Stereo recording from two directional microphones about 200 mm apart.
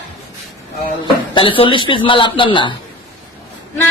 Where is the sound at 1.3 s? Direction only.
25° left (ahead or behind).